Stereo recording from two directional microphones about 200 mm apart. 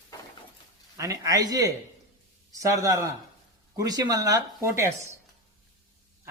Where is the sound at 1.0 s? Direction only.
15° right (ahead or behind).